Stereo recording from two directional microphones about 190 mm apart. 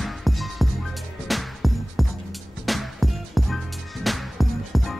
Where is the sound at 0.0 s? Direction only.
Centre (ahead or behind).